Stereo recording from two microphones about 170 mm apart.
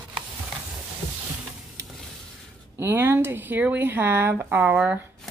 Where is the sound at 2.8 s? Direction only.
15° right (ahead or behind).